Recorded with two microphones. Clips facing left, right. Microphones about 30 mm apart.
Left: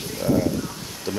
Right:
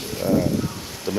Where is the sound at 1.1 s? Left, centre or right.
Centre.